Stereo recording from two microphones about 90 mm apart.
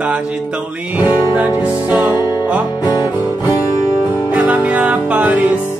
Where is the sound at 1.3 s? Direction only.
20° right (ahead or behind).